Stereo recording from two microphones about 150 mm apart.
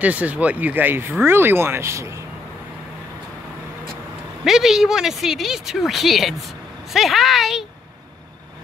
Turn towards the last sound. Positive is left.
turn(degrees=0)  # may be behind; listen again after turning